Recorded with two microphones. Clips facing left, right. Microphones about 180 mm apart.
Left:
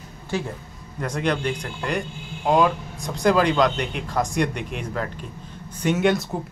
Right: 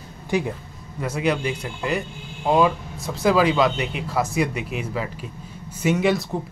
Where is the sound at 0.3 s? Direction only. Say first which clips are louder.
Right 4 dB; 15° right (ahead or behind).